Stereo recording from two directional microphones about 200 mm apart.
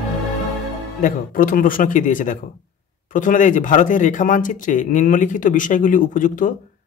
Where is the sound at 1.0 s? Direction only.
45° left (ahead or behind).